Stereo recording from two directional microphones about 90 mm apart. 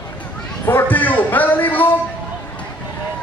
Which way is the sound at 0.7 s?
20° left (ahead or behind).